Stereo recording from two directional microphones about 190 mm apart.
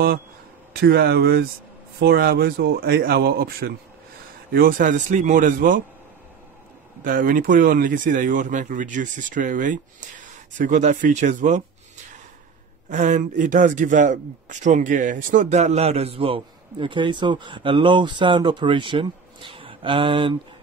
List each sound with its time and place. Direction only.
0.7 s speech: 55° right (ahead or behind)
7.0 s speech: 45° right (ahead or behind)
12.9 s a man's voice: 40° right (ahead or behind)